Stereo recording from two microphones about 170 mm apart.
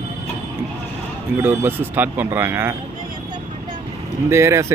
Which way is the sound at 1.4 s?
10° right (ahead or behind).